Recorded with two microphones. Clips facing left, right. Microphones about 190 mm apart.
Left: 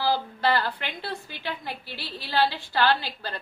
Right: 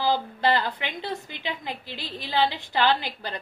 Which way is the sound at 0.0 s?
20° right (ahead or behind).